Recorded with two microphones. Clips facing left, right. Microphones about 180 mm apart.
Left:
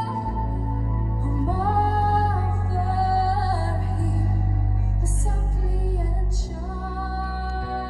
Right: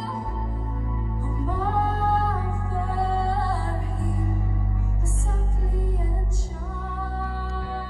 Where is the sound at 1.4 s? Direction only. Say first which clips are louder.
Left 1 dB; 35° left (ahead or behind).